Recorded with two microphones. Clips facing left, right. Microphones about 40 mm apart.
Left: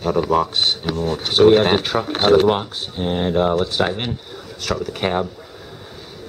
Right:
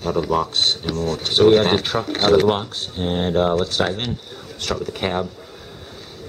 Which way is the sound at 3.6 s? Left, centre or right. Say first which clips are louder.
Left 1 dB; centre.